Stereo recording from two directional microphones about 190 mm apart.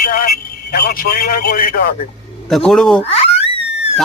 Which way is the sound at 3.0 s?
30° left (ahead or behind).